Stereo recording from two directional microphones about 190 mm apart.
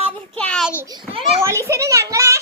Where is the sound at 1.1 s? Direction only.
30° right (ahead or behind).